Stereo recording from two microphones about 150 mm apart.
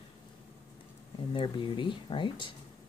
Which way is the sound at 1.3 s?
35° left (ahead or behind).